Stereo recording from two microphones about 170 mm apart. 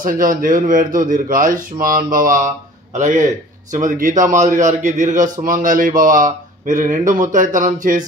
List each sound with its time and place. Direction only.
0.0 s speech: 55° right (ahead or behind)